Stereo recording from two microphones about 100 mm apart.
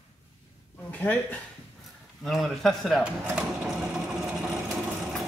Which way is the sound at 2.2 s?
5° left (ahead or behind).